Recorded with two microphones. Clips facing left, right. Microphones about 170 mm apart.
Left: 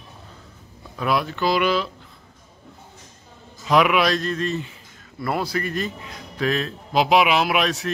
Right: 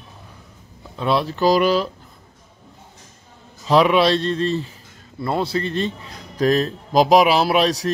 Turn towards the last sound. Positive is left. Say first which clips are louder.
# right 4 dB
turn(degrees=-35)  # may be behind; listen again after turning